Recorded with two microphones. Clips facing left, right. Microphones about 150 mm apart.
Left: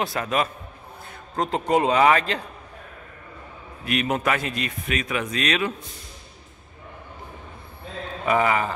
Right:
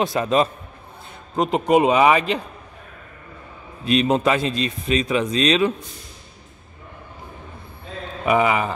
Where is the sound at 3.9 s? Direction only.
25° right (ahead or behind).